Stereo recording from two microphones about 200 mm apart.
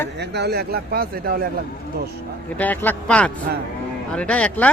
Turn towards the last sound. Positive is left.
turn(degrees=5)  # may be behind; listen again after turning